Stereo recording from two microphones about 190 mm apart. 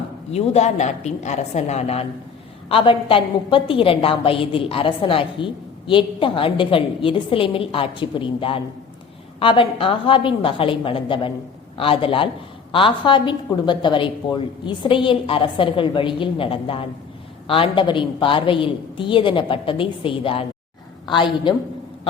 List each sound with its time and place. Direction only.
0.3 s a woman's voice: 35° left (ahead or behind)